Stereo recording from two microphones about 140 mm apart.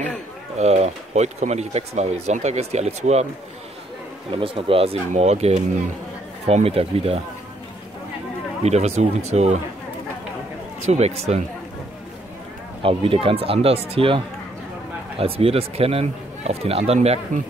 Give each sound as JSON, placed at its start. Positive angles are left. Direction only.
{"t": 0.6, "sound": "speech", "side_deg": -50}
{"t": 4.3, "sound": "speech", "side_deg": -40}
{"t": 8.6, "sound": "speech", "side_deg": -50}
{"t": 10.9, "sound": "speech", "side_deg": -50}
{"t": 12.8, "sound": "speech", "side_deg": -40}